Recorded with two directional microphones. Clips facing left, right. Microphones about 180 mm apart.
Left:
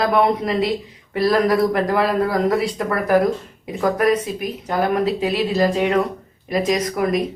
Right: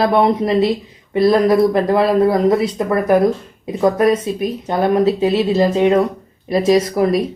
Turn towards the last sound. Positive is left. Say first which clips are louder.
# right 5 dB
turn(degrees=-30)  # may be behind; listen again after turning